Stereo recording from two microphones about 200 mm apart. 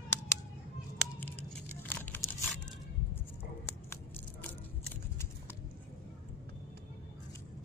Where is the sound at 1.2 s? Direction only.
10° left (ahead or behind).